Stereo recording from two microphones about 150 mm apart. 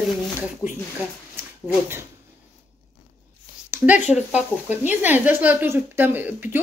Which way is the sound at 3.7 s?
10° right (ahead or behind).